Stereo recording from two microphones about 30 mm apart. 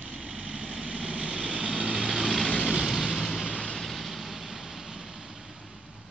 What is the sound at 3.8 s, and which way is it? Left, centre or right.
Vehicle, centre.